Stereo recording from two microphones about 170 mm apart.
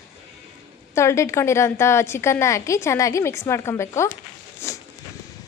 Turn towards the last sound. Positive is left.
turn(degrees=15)  # may be behind; listen again after turning